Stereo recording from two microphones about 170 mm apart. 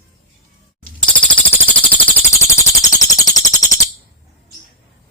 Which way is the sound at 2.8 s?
20° left (ahead or behind).